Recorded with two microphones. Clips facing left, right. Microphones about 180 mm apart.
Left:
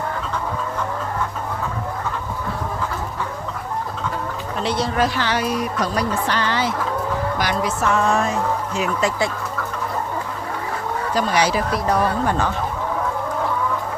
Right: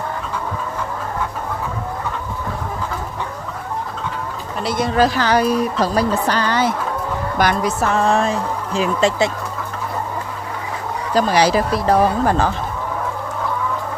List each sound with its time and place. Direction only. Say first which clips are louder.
4.6 s speech: right 4 dB; 45° right (ahead or behind)
7.8 s speech: right 1 dB; 35° right (ahead or behind)
11.1 s speech: right 5 dB; 35° right (ahead or behind)